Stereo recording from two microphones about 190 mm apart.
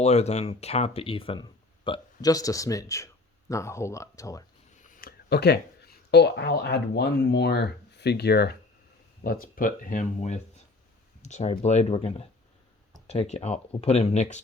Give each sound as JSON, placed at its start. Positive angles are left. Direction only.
{"t": 0.0, "sound": "speech", "side_deg": 35}
{"t": 4.8, "sound": "speech", "side_deg": 45}